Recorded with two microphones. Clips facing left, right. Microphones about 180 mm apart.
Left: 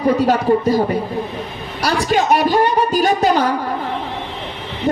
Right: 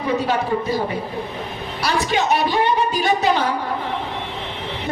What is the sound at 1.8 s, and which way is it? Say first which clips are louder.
A woman's voice: left 4 dB; 40° left (ahead or behind).